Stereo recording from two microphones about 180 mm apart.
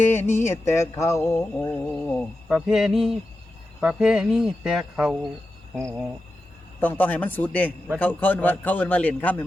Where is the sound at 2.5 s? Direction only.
Centre (ahead or behind).